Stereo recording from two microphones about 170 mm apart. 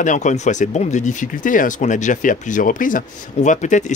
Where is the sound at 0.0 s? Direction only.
45° left (ahead or behind).